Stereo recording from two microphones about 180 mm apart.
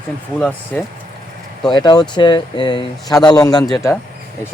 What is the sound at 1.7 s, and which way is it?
Speech, 25° left (ahead or behind).